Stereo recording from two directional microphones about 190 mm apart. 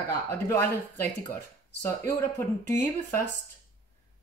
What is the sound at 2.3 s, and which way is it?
Speech, 15° left (ahead or behind).